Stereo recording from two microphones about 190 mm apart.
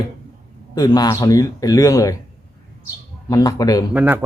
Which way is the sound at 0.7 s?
20° left (ahead or behind).